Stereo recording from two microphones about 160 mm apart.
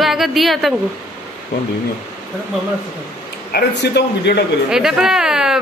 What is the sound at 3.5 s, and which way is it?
Speech, 90° left.